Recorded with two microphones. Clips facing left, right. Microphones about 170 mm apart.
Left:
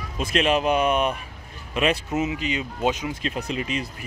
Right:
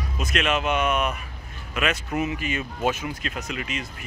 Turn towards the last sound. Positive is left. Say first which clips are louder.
# left 4 dB
turn(degrees=35)  # may be behind; listen again after turning